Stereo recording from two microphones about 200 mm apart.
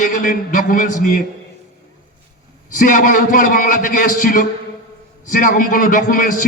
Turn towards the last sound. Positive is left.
turn(degrees=40)  # may be behind; listen again after turning